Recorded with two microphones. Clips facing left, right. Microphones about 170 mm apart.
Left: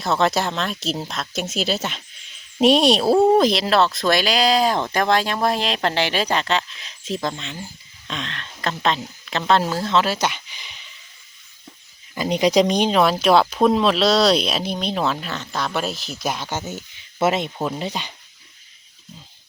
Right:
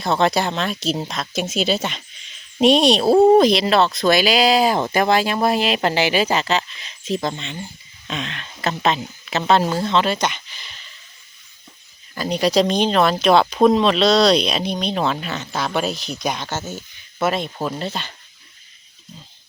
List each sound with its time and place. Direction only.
0.0 s speech: centre (ahead or behind)
12.1 s speech: 20° left (ahead or behind)